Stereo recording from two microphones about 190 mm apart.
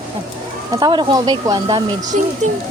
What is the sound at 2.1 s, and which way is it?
Speech, 40° right (ahead or behind).